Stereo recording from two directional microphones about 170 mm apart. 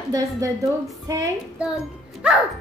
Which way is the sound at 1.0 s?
20° right (ahead or behind).